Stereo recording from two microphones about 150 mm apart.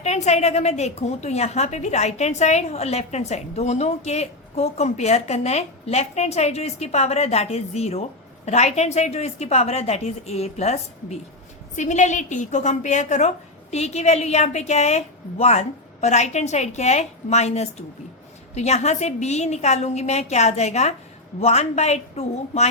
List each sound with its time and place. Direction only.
0.0 s a woman's voice: 50° left (ahead or behind)